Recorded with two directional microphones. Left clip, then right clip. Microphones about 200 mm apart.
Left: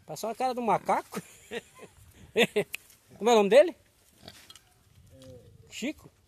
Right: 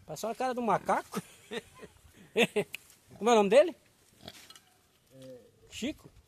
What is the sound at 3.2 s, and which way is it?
Speech, 20° left (ahead or behind).